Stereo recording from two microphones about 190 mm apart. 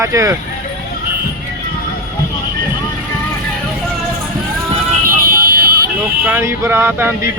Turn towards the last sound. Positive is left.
turn(degrees=-15)  # may be behind; listen again after turning